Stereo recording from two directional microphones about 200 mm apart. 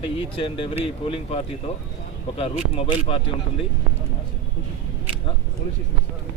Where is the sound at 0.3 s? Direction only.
25° left (ahead or behind).